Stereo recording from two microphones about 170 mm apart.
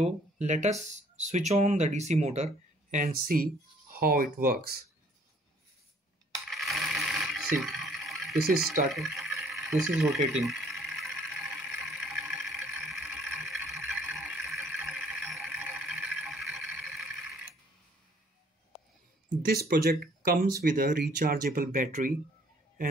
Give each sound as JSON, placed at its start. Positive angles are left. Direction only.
{"t": 0.0, "sound": "speech", "side_deg": -45}
{"t": 6.5, "sound": "coin", "side_deg": 0}
{"t": 8.9, "sound": "a sound", "side_deg": 0}
{"t": 19.2, "sound": "speech", "side_deg": -60}